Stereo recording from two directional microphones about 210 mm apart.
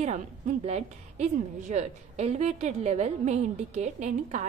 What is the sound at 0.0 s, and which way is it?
A woman's voice, 30° right (ahead or behind).